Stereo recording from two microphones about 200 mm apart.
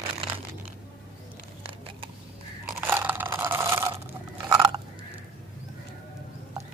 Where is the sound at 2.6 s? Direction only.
10° right (ahead or behind).